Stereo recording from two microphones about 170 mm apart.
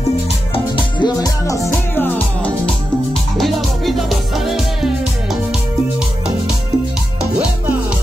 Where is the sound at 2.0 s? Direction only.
10° left (ahead or behind).